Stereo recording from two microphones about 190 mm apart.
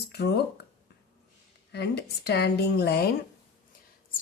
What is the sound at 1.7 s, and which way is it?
Speech, 60° left (ahead or behind).